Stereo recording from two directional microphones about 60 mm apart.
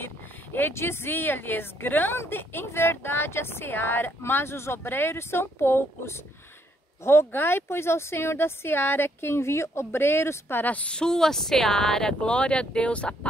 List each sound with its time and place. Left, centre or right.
0.0 s a woman's voice: left
10.6 s speech: left